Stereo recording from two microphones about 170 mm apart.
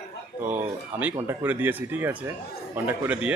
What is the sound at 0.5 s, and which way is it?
Speech, 10° right (ahead or behind).